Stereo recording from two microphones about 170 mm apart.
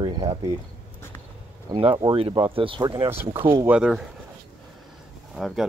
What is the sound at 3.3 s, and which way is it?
Speech, 30° right (ahead or behind).